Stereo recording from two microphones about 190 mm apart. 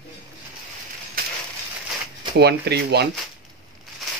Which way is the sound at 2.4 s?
60° right (ahead or behind).